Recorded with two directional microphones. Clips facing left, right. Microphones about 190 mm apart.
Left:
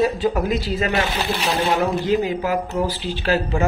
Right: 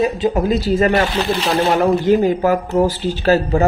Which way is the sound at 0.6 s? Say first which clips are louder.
Right 7 dB; 45° right (ahead or behind).